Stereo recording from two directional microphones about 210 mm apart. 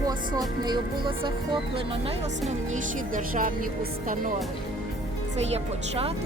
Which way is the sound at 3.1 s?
40° right (ahead or behind).